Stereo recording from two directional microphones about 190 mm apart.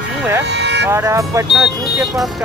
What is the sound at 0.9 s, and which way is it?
Speech, 15° right (ahead or behind).